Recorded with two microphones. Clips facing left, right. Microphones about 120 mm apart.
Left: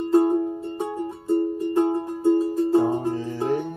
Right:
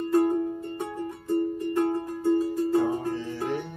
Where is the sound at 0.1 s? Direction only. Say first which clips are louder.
Left 4 dB; 25° left (ahead or behind).